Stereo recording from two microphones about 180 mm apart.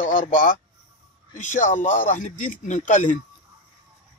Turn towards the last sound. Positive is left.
turn(degrees=45)  # may be behind; listen again after turning